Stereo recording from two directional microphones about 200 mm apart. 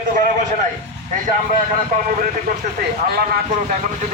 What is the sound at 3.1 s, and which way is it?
Speech, 45° right (ahead or behind).